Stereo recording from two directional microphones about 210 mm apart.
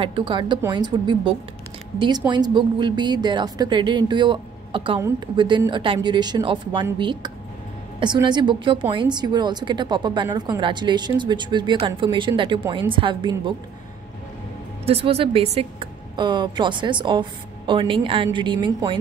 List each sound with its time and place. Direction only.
0.0 s a woman's voice: 25° right (ahead or behind)
14.9 s a woman's voice: 25° right (ahead or behind)